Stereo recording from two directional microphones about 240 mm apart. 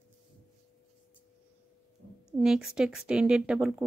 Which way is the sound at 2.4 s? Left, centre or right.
Centre.